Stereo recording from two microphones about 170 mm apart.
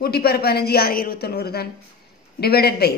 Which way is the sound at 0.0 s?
65° left (ahead or behind).